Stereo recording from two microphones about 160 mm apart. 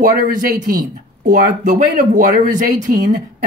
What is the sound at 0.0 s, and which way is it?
Speech, 60° right (ahead or behind).